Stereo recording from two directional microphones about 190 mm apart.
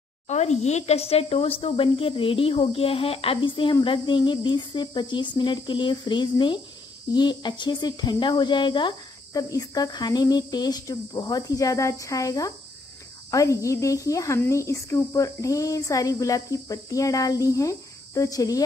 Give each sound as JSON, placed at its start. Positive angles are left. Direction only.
{"t": 0.3, "sound": "speech", "side_deg": 35}